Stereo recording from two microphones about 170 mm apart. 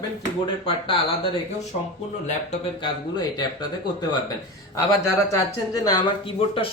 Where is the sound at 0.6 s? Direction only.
35° left (ahead or behind).